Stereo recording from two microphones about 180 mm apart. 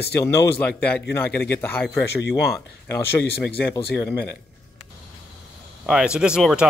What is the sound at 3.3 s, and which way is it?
Speech, 60° left (ahead or behind).